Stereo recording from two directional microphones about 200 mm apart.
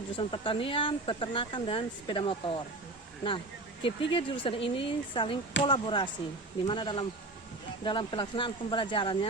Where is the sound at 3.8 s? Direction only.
25° left (ahead or behind).